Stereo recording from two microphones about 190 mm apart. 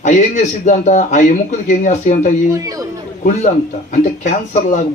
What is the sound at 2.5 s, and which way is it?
Speech, 20° right (ahead or behind).